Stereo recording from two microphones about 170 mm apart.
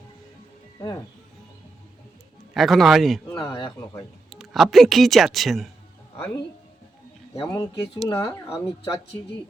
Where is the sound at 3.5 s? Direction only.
30° left (ahead or behind).